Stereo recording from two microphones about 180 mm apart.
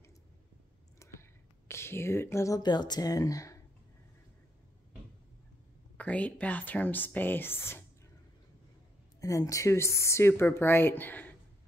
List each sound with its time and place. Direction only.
1.7 s speech: 15° left (ahead or behind)
5.9 s speech: 5° left (ahead or behind)
9.2 s speech: 20° left (ahead or behind)